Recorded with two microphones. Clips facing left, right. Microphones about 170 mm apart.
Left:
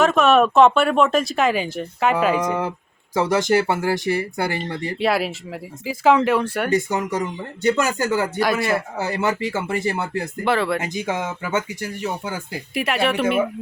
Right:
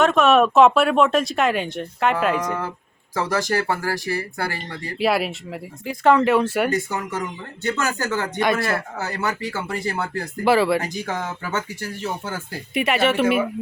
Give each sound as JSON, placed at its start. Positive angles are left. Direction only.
{"t": 0.0, "sound": "speech", "side_deg": 0}
{"t": 3.2, "sound": "speech", "side_deg": 20}
{"t": 4.9, "sound": "speech", "side_deg": 0}
{"t": 6.7, "sound": "speech", "side_deg": 20}
{"t": 9.0, "sound": "speech", "side_deg": 15}
{"t": 10.4, "sound": "speech", "side_deg": -5}
{"t": 10.8, "sound": "speech", "side_deg": 20}
{"t": 12.7, "sound": "speech", "side_deg": 0}